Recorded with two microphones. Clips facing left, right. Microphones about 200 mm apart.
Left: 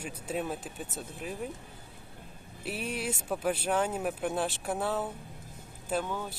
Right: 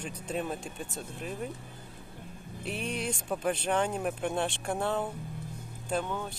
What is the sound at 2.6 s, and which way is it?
Speech, 5° left (ahead or behind).